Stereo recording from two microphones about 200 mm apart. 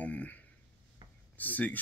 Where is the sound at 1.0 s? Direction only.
20° right (ahead or behind).